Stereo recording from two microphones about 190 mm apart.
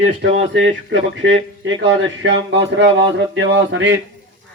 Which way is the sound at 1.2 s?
85° right.